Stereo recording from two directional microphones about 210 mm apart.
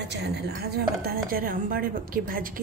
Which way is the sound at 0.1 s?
50° right (ahead or behind).